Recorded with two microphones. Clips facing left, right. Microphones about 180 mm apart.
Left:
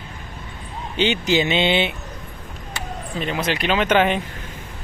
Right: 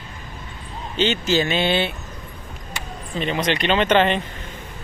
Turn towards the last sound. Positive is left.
turn(degrees=10)  # may be behind; listen again after turning